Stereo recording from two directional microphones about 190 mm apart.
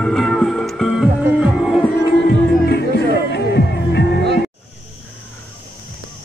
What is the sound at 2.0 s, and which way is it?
Music, 55° left (ahead or behind).